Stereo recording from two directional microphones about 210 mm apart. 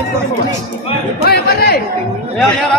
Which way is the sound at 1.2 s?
50° left (ahead or behind).